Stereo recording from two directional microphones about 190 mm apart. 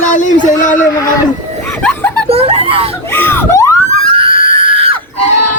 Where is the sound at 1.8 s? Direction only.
5° left (ahead or behind).